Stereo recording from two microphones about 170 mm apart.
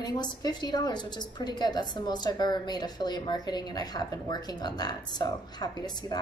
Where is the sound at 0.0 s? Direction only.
25° left (ahead or behind).